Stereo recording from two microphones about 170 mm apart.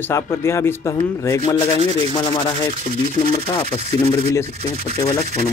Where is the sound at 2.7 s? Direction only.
45° right (ahead or behind).